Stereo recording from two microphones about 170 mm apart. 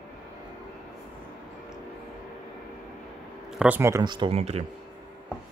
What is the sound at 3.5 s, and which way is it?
Speech, 5° right (ahead or behind).